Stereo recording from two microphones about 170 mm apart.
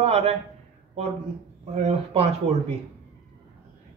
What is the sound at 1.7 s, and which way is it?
Speech, 40° right (ahead or behind).